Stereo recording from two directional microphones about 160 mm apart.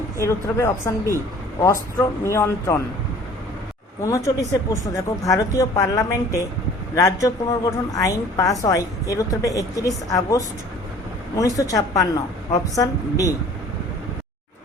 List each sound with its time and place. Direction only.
0.2 s a woman's voice: 15° left (ahead or behind)
4.0 s a woman's voice: 20° left (ahead or behind)